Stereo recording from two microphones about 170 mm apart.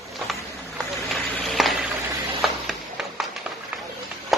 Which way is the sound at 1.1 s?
Centre (ahead or behind).